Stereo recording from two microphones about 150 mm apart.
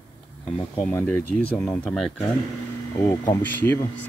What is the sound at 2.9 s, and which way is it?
Speech, 20° left (ahead or behind).